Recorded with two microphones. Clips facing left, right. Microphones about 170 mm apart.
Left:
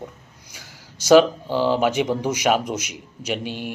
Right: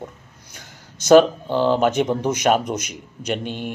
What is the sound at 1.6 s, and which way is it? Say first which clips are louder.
A man's voice: right 2 dB; 10° left (ahead or behind).